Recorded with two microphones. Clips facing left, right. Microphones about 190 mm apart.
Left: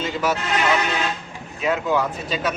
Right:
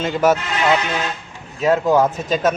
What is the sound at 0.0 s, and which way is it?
Speech, 50° right (ahead or behind).